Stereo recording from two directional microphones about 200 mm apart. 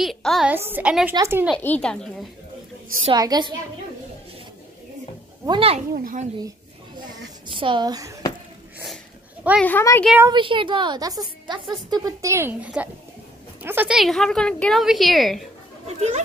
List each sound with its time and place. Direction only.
0.0 s a woman's voice: centre (ahead or behind)
1.6 s a woman's voice: 5° left (ahead or behind)
3.1 s a woman's voice: 20° right (ahead or behind)
5.4 s a woman's voice: 25° right (ahead or behind)
5.9 s speech: 45° right (ahead or behind)
7.4 s a woman's voice: 25° right (ahead or behind)
8.7 s a sound: 5° right (ahead or behind)
9.6 s speech: 10° left (ahead or behind)
10.3 s a woman's voice: 25° right (ahead or behind); by 15.4 s centre (ahead or behind)